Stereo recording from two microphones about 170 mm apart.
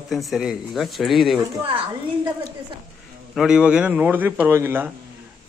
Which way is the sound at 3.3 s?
5° right (ahead or behind).